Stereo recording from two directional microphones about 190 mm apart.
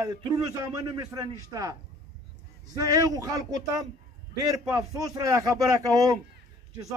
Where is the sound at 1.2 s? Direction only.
20° right (ahead or behind).